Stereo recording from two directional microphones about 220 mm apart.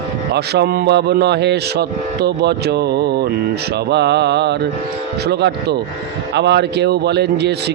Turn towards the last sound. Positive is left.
turn(degrees=-50)  # may be behind; listen again after turning